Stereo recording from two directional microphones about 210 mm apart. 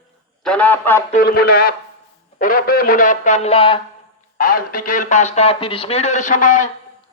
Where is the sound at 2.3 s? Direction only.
40° left (ahead or behind).